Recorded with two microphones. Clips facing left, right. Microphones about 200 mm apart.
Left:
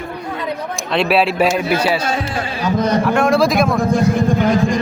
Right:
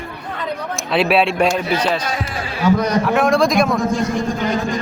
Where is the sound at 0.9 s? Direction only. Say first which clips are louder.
Even; centre (ahead or behind).